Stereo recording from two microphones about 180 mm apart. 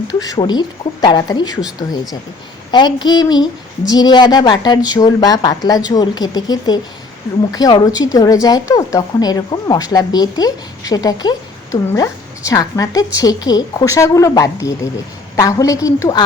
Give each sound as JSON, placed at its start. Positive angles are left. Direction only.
{"t": 0.1, "sound": "a woman's voice", "side_deg": 20}
{"t": 2.7, "sound": "a woman's voice", "side_deg": 25}